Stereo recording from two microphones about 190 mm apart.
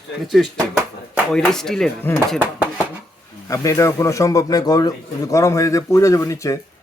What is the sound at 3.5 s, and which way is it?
A man's voice, 15° left (ahead or behind).